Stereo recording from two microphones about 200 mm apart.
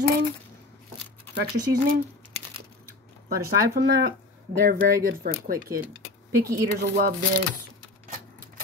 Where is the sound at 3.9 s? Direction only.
50° right (ahead or behind).